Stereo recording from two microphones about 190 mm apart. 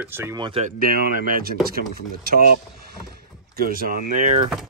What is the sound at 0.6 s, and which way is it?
Speech, 45° right (ahead or behind).